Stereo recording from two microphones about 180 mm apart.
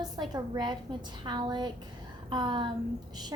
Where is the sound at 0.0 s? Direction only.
20° right (ahead or behind).